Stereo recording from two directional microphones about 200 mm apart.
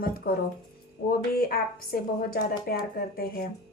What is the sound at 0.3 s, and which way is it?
A woman's voice, 50° left (ahead or behind).